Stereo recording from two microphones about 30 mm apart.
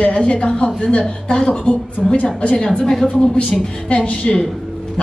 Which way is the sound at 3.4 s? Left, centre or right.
Left.